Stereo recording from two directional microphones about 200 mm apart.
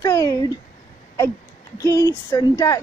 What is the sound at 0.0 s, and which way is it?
Speech, 15° left (ahead or behind).